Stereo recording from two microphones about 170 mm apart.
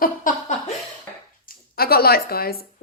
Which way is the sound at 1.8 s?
65° left (ahead or behind).